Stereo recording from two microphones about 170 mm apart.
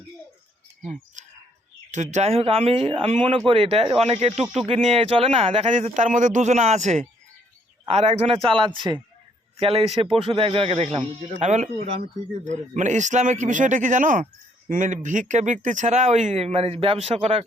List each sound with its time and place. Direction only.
0.8 s speech: 45° right (ahead or behind)
4.4 s speech: 5° right (ahead or behind)
4.7 s speech: 35° right (ahead or behind)